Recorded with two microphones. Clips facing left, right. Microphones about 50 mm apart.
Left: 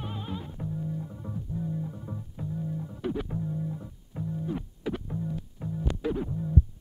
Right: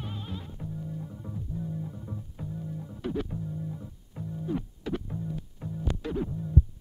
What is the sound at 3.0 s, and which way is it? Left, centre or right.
Music, centre.